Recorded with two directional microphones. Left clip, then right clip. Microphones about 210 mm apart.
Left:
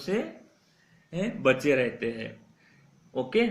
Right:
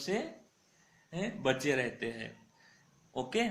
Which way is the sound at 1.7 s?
40° right (ahead or behind).